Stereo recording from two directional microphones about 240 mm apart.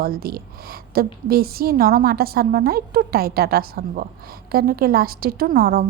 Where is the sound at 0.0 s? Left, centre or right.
Right.